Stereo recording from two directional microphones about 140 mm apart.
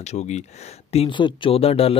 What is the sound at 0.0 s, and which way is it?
Speech, 55° left (ahead or behind).